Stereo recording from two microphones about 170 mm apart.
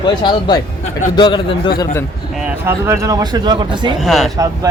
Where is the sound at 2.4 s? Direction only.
15° right (ahead or behind).